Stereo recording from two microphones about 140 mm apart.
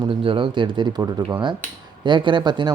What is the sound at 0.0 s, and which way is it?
Speech, 40° right (ahead or behind).